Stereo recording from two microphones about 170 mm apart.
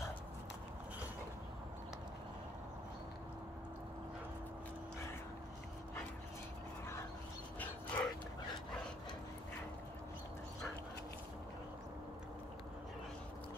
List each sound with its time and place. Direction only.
7.5 s dog: 10° left (ahead or behind)